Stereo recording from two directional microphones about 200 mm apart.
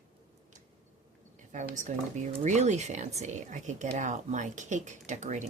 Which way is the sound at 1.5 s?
35° right (ahead or behind).